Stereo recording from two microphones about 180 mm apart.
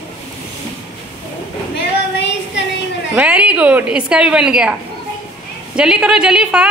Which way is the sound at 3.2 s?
5° right (ahead or behind).